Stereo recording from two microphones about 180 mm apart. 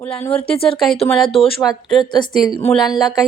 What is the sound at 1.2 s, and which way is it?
Speech, 30° left (ahead or behind).